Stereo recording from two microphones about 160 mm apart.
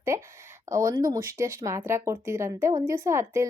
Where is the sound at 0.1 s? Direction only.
20° right (ahead or behind).